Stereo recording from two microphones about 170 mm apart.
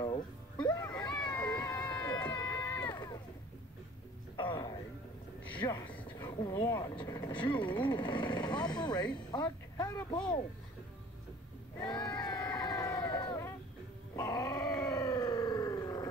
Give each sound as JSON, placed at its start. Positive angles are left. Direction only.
{"t": 0.0, "sound": "music", "side_deg": 25}
{"t": 2.1, "sound": "a sound", "side_deg": 25}
{"t": 2.5, "sound": "run", "side_deg": 20}
{"t": 4.4, "sound": "a sound", "side_deg": 25}
{"t": 6.1, "sound": "vehicle", "side_deg": 25}
{"t": 9.3, "sound": "music", "side_deg": 25}
{"t": 10.1, "sound": "speech", "side_deg": 25}
{"t": 11.8, "sound": "crowd", "side_deg": 25}
{"t": 14.1, "sound": "dog", "side_deg": 20}